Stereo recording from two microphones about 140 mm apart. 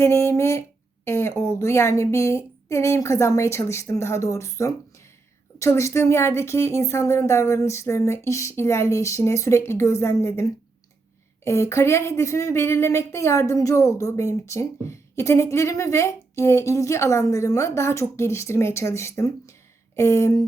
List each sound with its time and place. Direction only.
0.0 s speech: 20° left (ahead or behind)